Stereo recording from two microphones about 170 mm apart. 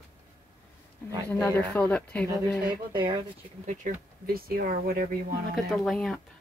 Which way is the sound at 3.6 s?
55° right (ahead or behind).